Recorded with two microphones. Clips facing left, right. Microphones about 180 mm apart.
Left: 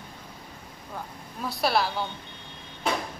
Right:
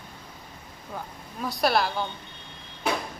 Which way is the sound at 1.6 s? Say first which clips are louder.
Right 1 dB; centre (ahead or behind).